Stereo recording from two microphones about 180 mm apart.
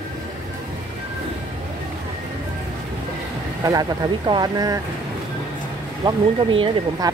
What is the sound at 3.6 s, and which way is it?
Speech, 20° right (ahead or behind).